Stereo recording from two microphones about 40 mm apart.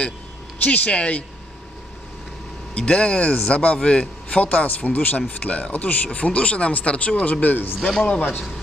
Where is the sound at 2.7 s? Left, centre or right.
Left.